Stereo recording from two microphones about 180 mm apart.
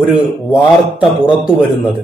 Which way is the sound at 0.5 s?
5° right (ahead or behind).